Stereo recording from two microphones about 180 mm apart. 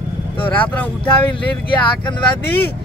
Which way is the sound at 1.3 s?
30° left (ahead or behind).